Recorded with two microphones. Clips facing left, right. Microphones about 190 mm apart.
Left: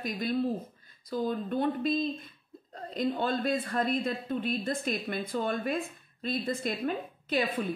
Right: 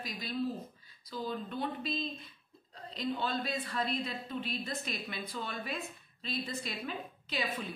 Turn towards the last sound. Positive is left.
turn(degrees=55)  # may be behind; listen again after turning